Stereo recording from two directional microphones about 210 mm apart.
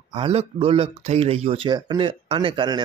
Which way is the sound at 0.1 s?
25° right (ahead or behind).